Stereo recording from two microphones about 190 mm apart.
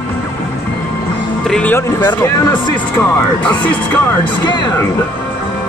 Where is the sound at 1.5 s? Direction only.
10° left (ahead or behind).